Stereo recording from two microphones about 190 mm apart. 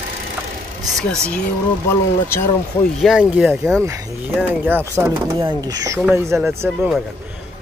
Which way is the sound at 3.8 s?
10° right (ahead or behind).